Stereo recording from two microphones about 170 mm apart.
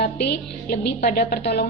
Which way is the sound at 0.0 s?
65° left (ahead or behind).